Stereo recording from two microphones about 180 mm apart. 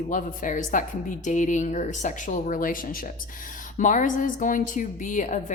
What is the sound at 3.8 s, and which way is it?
A woman's voice, 45° left (ahead or behind).